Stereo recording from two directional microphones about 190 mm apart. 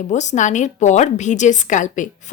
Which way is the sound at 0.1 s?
40° left (ahead or behind).